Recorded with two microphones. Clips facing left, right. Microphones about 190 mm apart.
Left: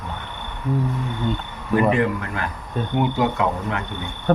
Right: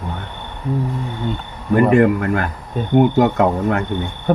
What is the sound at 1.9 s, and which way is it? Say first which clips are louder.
Speech: right 7 dB; 50° right (ahead or behind).